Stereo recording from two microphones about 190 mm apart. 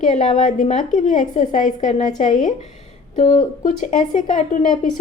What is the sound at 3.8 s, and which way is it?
Speech, 45° left (ahead or behind).